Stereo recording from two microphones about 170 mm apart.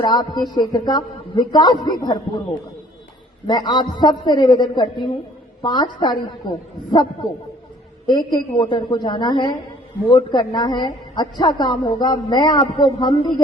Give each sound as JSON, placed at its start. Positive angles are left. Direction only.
{"t": 0.0, "sound": "a man's voice", "side_deg": 25}
{"t": 3.4, "sound": "a man's voice", "side_deg": 25}
{"t": 8.0, "sound": "a man's voice", "side_deg": 25}